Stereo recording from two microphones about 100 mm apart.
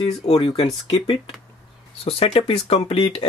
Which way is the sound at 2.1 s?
75° left (ahead or behind).